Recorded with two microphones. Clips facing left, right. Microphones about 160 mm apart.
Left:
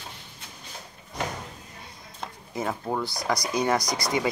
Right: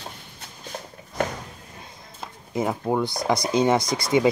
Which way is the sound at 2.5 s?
20° right (ahead or behind).